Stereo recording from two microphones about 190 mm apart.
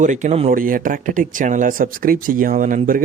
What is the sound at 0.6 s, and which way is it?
Speech, 45° right (ahead or behind).